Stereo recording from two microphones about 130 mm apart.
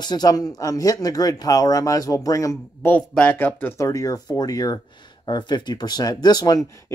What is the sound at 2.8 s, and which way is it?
Speech, 10° left (ahead or behind).